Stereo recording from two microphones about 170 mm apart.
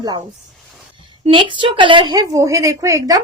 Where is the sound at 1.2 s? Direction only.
30° right (ahead or behind).